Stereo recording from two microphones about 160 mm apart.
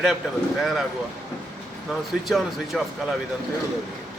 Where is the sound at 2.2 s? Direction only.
Centre (ahead or behind).